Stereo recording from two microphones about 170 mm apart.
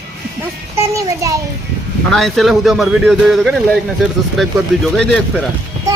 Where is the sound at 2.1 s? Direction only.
Centre (ahead or behind).